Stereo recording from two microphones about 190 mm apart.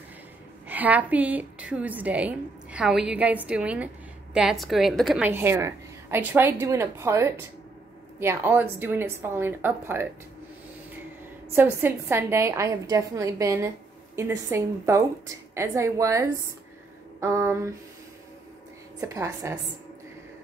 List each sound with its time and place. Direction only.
0.7 s a woman's voice: 10° right (ahead or behind)
11.5 s a woman's voice: 10° right (ahead or behind)
18.9 s a woman's voice: 15° right (ahead or behind)